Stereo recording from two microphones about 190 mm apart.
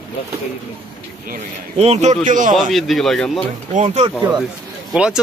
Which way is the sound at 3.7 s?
35° right (ahead or behind).